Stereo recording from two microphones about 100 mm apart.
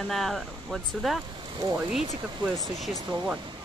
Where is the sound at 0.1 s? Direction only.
Centre (ahead or behind).